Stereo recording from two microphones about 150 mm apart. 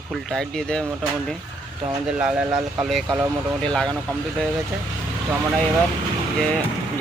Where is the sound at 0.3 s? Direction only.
5° left (ahead or behind).